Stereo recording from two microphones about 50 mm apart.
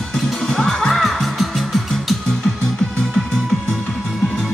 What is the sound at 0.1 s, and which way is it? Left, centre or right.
Music, centre.